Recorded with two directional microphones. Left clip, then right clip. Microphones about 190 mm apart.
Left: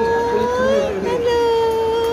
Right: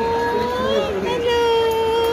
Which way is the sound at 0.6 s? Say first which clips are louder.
Left 3 dB; 40° left (ahead or behind).